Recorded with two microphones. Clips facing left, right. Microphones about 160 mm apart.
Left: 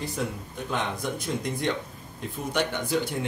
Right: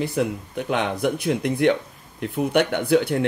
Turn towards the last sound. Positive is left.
turn(degrees=-65)  # may be behind; listen again after turning